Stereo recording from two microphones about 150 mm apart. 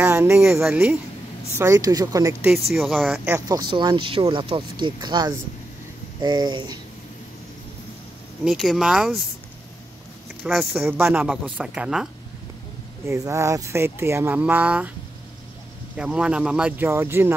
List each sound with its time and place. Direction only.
0.6 s speech: 5° right (ahead or behind)
1.6 s speech: 20° right (ahead or behind)
2.4 s speech: centre (ahead or behind)
3.0 s speech: 10° right (ahead or behind)
3.3 s speech: 25° right (ahead or behind)
8.5 s speech: centre (ahead or behind)
10.4 s speech: 5° right (ahead or behind)
13.0 s speech: 20° right (ahead or behind)
16.0 s speech: 5° right (ahead or behind)